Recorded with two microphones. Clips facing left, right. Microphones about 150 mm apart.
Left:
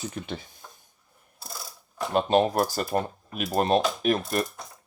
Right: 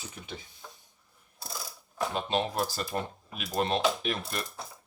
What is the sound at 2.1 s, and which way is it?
Speech, 55° left (ahead or behind).